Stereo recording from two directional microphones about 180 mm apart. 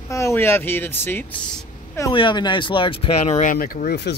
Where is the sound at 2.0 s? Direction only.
25° left (ahead or behind).